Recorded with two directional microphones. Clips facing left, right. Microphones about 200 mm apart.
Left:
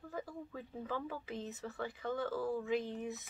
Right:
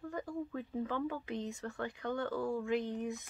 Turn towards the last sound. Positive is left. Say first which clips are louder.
# right 2 dB
turn(degrees=0)  # may be behind; listen again after turning